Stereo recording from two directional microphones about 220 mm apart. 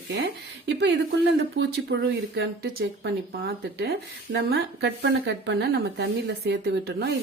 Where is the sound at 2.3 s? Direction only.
45° right (ahead or behind).